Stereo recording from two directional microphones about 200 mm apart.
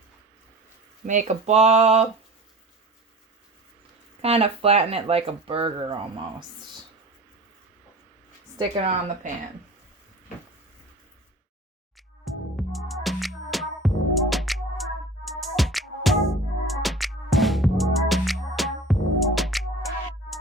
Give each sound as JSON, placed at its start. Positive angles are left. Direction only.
{"t": 1.0, "sound": "speech", "side_deg": -40}
{"t": 4.2, "sound": "speech", "side_deg": -30}
{"t": 8.5, "sound": "speech", "side_deg": -25}
{"t": 12.2, "sound": "music", "side_deg": 0}